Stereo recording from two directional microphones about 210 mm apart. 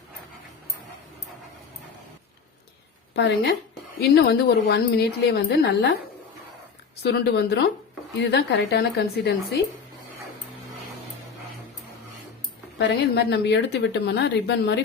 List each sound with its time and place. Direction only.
3.2 s a woman's voice: 55° left (ahead or behind)
7.0 s a woman's voice: 55° left (ahead or behind)
12.9 s speech: 55° left (ahead or behind)